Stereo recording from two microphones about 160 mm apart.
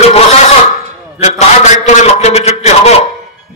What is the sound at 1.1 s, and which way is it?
A man's voice, 45° left (ahead or behind).